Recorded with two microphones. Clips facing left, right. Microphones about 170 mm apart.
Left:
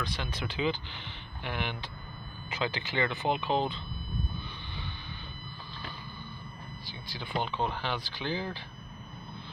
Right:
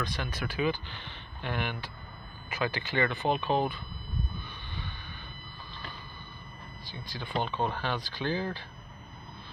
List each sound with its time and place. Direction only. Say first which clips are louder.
0.1 s speech: right 1 dB; 20° left (ahead or behind)
7.2 s speech: right 1 dB; 15° left (ahead or behind)